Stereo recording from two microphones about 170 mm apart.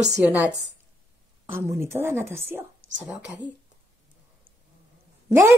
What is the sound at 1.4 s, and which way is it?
A woman's voice, 15° right (ahead or behind).